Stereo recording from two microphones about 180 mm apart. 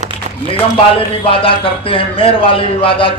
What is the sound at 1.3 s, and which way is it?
A man's voice, 30° left (ahead or behind).